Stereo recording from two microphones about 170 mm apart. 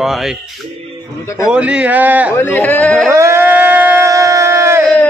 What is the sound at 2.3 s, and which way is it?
Speech, 10° left (ahead or behind).